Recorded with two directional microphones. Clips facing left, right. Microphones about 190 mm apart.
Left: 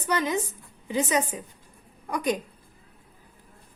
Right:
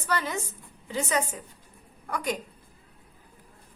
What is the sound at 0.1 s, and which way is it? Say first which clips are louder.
A woman's voice: left 4 dB; 15° left (ahead or behind).